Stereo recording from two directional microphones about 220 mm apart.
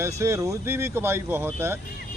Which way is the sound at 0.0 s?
15° right (ahead or behind).